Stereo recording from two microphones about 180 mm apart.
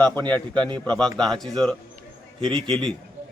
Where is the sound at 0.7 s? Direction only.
25° right (ahead or behind).